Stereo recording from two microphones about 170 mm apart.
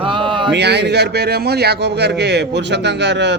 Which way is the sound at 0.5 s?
85° right.